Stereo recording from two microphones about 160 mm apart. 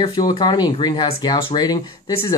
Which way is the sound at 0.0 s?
25° left (ahead or behind).